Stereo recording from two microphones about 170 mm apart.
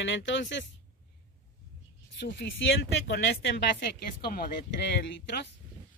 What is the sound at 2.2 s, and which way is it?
Speech, 65° left (ahead or behind).